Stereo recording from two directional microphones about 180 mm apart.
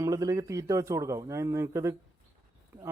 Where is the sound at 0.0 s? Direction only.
20° right (ahead or behind).